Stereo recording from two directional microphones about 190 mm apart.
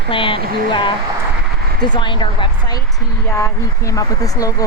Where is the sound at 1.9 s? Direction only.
25° left (ahead or behind).